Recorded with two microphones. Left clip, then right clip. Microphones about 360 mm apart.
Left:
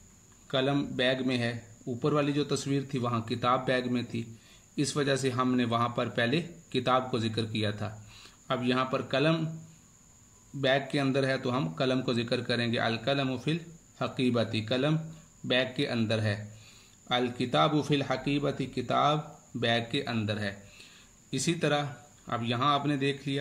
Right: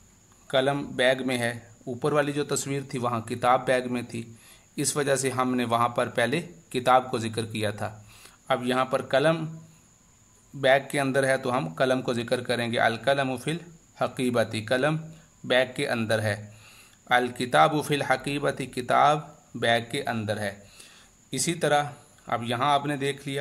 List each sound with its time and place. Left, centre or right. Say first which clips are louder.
0.5 s a man's voice: right 5 dB; centre
10.6 s a man's voice: right 6 dB; centre